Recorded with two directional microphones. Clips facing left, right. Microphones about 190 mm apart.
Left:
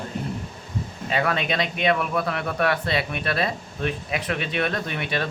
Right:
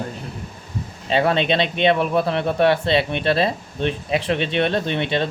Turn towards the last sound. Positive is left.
turn(degrees=-25)  # may be behind; listen again after turning